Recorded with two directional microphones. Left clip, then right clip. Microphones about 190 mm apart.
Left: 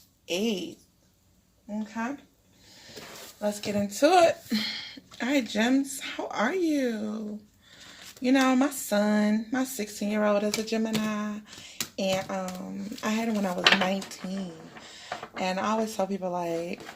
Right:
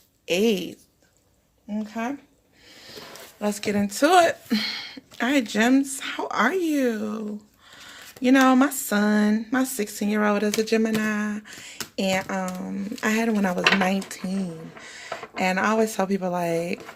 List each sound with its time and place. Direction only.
0.3 s a woman's voice: 45° right (ahead or behind)
3.4 s a woman's voice: 45° right (ahead or behind)
7.7 s a sound: 35° right (ahead or behind)
10.6 s a woman's voice: 40° right (ahead or behind)